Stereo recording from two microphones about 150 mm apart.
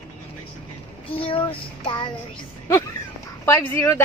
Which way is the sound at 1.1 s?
35° left (ahead or behind).